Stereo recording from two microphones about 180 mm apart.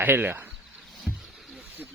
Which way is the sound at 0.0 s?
10° right (ahead or behind).